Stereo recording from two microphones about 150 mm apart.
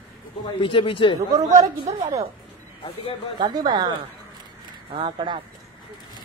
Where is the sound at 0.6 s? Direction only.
35° left (ahead or behind).